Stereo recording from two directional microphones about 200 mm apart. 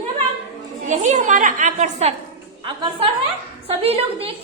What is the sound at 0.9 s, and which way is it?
A woman's voice, 35° right (ahead or behind).